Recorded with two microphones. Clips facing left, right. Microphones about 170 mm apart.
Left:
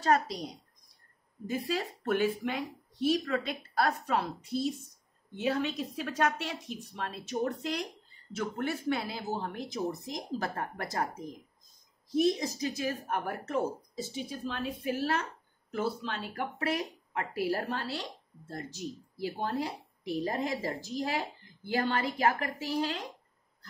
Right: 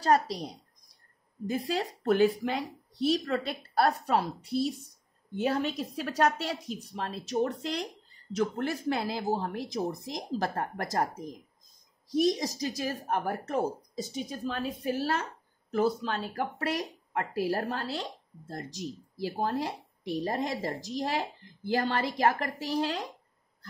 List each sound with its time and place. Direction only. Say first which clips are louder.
0.0 s speech: right 2 dB; 35° right (ahead or behind)
1.6 s speech: right 2 dB; 35° right (ahead or behind)
12.2 s speech: right 1 dB; 35° right (ahead or behind)